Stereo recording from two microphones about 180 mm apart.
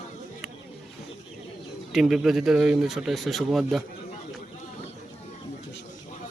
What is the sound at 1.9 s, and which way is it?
Speech, centre (ahead or behind).